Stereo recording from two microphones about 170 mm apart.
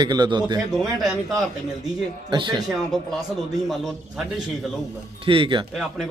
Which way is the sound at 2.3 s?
25° right (ahead or behind).